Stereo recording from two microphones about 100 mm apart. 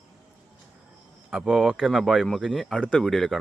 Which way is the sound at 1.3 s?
5° right (ahead or behind).